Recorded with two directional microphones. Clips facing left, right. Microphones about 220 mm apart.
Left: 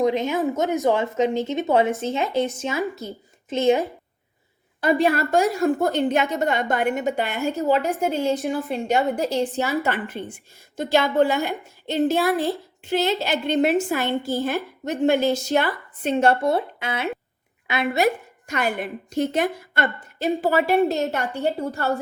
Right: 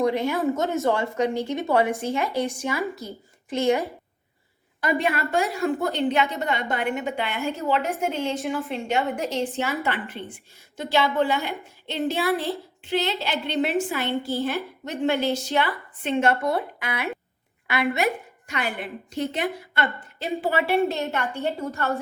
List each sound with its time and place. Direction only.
0.0 s a woman's voice: 20° left (ahead or behind); by 5.2 s 35° left (ahead or behind)
5.6 s a woman's voice: 50° left (ahead or behind); by 17.9 s 25° left (ahead or behind)
17.9 s a woman's voice: 40° left (ahead or behind)